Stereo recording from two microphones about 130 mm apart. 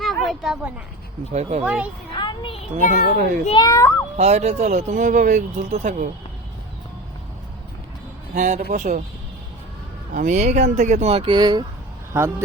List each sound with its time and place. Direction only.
0.0 s a sound: centre (ahead or behind)
1.3 s speech: 55° right (ahead or behind)
1.6 s a child's voice: 10° right (ahead or behind)
2.1 s a sound: 40° left (ahead or behind)
3.1 s a man's voice: 70° right (ahead or behind)
3.5 s a child's voice: 25° left (ahead or behind)
4.2 s speech: 60° right (ahead or behind)
8.4 s a man's voice: 70° right (ahead or behind)
10.1 s speech: 80° right; by 11.3 s 50° right (ahead or behind)
11.3 s speech: 35° right (ahead or behind)
12.1 s a man's voice: 20° right (ahead or behind)